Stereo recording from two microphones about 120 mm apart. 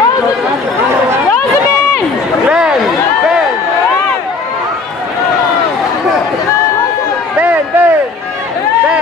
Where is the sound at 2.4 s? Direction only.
5° right (ahead or behind).